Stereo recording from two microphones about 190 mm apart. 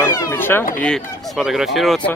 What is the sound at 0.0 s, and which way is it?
Speech, 10° left (ahead or behind).